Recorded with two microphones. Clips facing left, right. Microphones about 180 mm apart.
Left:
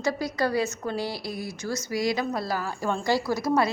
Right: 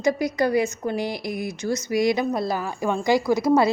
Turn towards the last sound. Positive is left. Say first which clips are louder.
# right 5 dB
turn(degrees=-25)  # may be behind; listen again after turning